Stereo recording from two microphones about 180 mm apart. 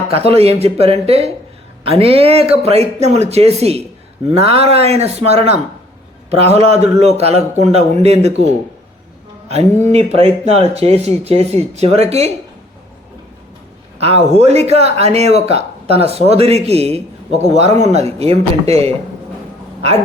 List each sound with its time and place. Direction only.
0.1 s speech: 35° right (ahead or behind)
9.9 s speech: 35° right (ahead or behind)
14.0 s speech: 35° right (ahead or behind)